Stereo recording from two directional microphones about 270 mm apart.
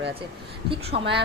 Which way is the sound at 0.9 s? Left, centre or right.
Right.